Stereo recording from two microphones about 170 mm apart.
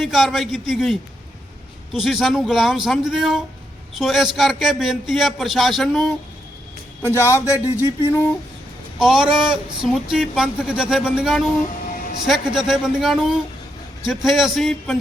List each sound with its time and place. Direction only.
0.0 s a man's voice: centre (ahead or behind)
7.0 s speech: 15° left (ahead or behind)
9.0 s a man's voice: 5° right (ahead or behind)